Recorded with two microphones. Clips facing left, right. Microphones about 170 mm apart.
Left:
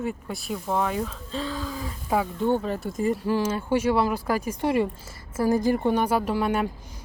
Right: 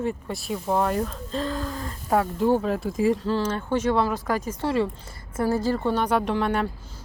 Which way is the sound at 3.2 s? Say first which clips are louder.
Even; 10° left (ahead or behind).